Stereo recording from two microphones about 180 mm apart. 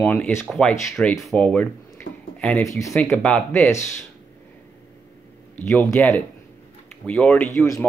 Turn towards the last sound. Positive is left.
turn(degrees=15)  # may be behind; listen again after turning